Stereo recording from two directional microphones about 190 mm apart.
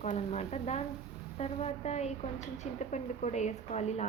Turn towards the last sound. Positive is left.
turn(degrees=35)  # may be behind; listen again after turning